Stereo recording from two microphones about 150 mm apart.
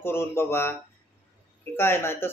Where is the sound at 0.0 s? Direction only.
15° left (ahead or behind).